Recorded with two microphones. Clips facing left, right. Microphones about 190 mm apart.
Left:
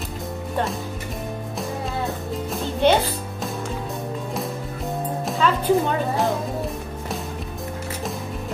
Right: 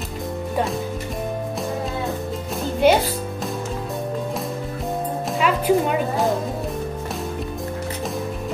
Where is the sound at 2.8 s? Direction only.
10° right (ahead or behind).